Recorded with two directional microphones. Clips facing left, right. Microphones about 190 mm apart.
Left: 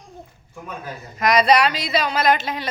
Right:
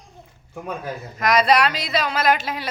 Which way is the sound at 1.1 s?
Centre (ahead or behind).